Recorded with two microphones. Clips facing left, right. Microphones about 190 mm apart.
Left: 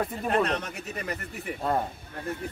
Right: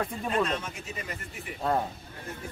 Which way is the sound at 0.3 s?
65° left (ahead or behind).